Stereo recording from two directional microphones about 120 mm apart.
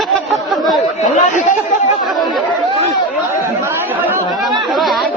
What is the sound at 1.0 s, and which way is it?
Speech, 90° left.